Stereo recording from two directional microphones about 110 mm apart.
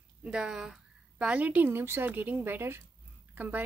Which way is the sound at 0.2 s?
5° right (ahead or behind).